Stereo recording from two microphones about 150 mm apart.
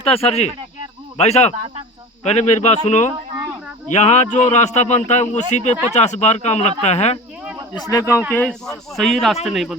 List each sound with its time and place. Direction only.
0.1 s speech: 40° left (ahead or behind)
7.7 s speech: 25° left (ahead or behind)
8.3 s speech: 10° left (ahead or behind)